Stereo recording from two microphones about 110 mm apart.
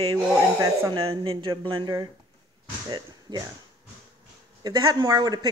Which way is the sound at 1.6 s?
50° right (ahead or behind).